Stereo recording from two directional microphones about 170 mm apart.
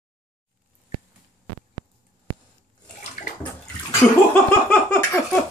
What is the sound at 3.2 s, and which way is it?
Bathtub, 50° left (ahead or behind).